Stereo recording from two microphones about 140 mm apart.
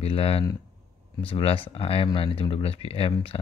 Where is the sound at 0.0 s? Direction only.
45° left (ahead or behind).